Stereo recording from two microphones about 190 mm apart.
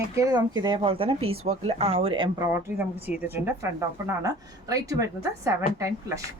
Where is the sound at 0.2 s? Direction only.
20° right (ahead or behind).